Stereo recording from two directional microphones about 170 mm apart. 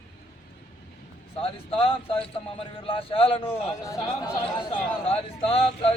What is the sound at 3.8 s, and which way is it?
Speech, 20° left (ahead or behind).